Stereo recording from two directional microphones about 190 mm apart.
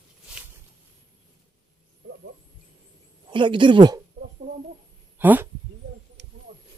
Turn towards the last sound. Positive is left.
turn(degrees=-10)  # may be behind; listen again after turning